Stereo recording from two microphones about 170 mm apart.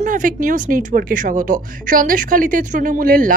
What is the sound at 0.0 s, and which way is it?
A woman's voice, 50° right (ahead or behind).